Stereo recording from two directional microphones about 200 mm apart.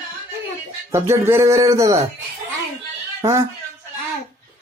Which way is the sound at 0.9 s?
15° right (ahead or behind).